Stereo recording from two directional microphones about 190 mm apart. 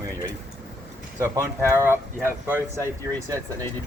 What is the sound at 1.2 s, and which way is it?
Speech, 15° right (ahead or behind).